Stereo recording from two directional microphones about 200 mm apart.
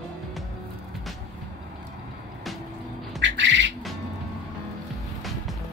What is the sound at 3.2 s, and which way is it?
Squawk, 65° right (ahead or behind).